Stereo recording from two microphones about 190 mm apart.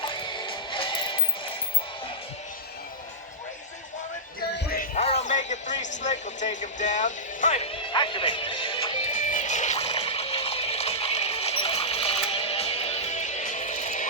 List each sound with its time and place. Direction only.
0.0 s music: 25° left (ahead or behind)
4.5 s music: 50° left (ahead or behind)
4.9 s music: 35° left (ahead or behind)
9.1 s music: 40° left (ahead or behind)